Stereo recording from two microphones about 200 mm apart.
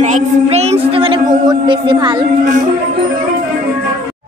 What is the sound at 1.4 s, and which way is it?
Speech, 20° right (ahead or behind).